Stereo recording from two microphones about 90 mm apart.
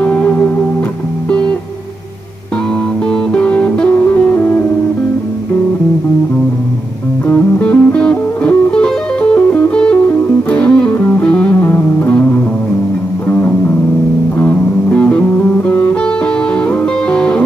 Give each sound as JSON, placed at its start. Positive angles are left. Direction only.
{"t": 0.0, "sound": "music", "side_deg": 15}
{"t": 3.1, "sound": "music", "side_deg": 15}
{"t": 7.2, "sound": "music", "side_deg": 20}
{"t": 14.4, "sound": "music", "side_deg": 20}